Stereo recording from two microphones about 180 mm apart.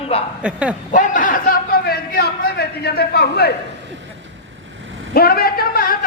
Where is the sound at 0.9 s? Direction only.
45° left (ahead or behind); by 3.5 s 65° left (ahead or behind).